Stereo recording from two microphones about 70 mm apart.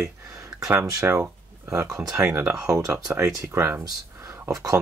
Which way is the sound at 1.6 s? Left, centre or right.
Right.